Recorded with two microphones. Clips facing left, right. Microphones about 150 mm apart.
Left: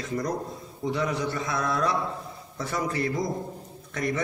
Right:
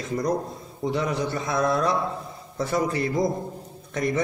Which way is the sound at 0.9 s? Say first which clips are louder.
Right 2 dB; 25° right (ahead or behind).